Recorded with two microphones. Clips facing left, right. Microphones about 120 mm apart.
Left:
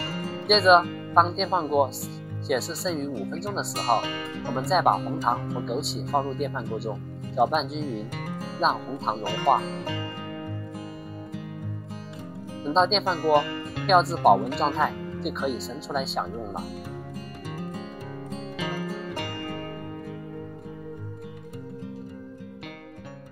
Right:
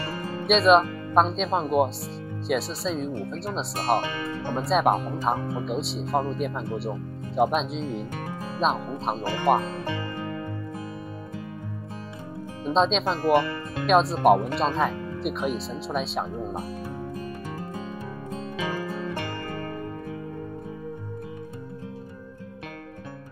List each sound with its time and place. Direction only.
0.5 s speech: centre (ahead or behind)
12.6 s speech: centre (ahead or behind)